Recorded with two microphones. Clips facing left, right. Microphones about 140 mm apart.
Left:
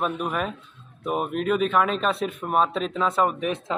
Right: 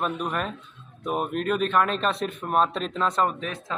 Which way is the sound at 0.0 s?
5° left (ahead or behind).